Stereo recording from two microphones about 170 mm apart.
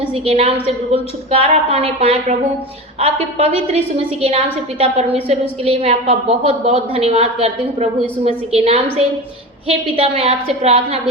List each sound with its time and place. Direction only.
0.1 s a woman's voice: 35° right (ahead or behind)